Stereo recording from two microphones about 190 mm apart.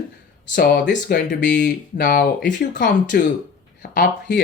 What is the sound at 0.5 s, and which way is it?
Speech, 55° left (ahead or behind).